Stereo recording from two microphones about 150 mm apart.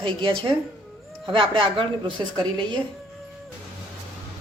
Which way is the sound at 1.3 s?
35° right (ahead or behind).